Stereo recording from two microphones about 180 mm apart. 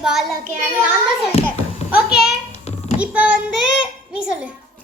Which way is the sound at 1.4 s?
35° left (ahead or behind).